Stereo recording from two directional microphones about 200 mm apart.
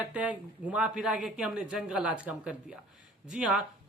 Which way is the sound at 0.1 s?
5° right (ahead or behind).